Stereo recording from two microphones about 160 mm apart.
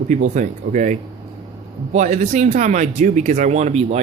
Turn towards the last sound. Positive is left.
turn(degrees=-40)  # may be behind; listen again after turning